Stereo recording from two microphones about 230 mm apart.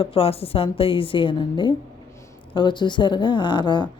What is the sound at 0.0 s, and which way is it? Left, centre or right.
A woman's voice, left.